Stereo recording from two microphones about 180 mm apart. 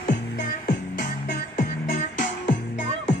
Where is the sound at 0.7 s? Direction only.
50° left (ahead or behind).